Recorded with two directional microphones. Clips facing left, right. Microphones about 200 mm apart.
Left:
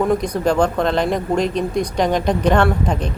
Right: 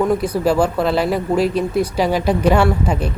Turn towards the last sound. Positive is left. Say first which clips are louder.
# right 1 dB
turn(degrees=-10)  # may be behind; listen again after turning